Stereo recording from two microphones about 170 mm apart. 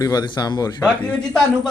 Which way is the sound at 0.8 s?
5° left (ahead or behind).